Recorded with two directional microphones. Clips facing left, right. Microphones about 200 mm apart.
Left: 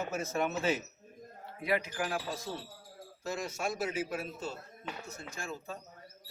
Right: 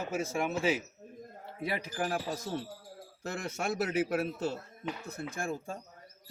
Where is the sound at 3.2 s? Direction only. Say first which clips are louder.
Right 1 dB; 55° right (ahead or behind).